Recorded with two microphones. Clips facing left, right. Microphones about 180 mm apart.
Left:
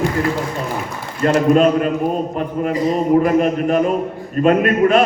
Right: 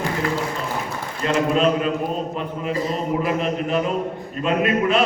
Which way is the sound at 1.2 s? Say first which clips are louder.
Left 6 dB; 50° left (ahead or behind).